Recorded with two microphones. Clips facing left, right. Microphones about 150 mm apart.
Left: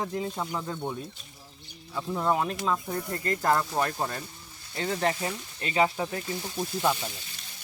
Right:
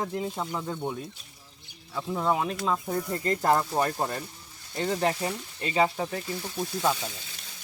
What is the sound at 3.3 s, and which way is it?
Speech, 25° right (ahead or behind).